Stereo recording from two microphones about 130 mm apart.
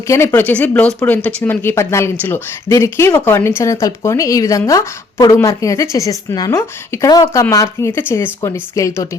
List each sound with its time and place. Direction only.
0.1 s speech: 20° left (ahead or behind)